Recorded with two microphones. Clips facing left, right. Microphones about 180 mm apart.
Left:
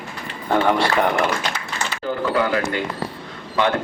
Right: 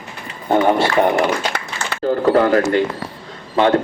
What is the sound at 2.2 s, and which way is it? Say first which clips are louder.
Speech: right 7 dB; 40° right (ahead or behind).